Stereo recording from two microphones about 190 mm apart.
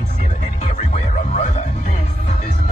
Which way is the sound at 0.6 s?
40° left (ahead or behind).